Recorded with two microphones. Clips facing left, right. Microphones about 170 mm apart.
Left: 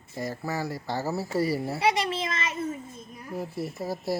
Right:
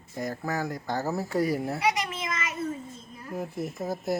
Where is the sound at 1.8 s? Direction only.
30° left (ahead or behind).